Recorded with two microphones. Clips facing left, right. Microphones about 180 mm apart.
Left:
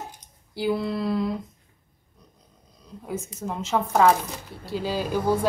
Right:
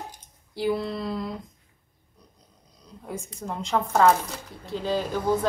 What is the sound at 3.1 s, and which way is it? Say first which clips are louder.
A woman's voice: left 3 dB; 5° left (ahead or behind).